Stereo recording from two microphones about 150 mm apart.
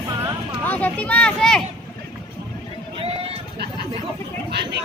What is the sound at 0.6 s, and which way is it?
Speech, 10° left (ahead or behind).